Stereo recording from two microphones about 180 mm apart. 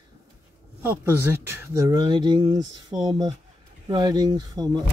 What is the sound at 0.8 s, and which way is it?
Speech, 15° right (ahead or behind).